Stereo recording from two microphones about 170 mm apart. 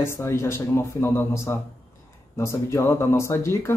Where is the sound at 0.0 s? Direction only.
15° left (ahead or behind).